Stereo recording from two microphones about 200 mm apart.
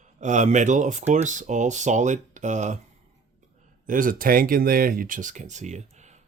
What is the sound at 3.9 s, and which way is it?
Speech, 45° right (ahead or behind).